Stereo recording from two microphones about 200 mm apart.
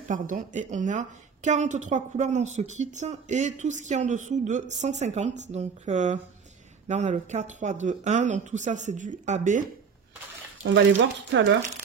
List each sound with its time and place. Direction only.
0.1 s a woman's voice: 40° right (ahead or behind)
10.6 s speech: 65° right (ahead or behind)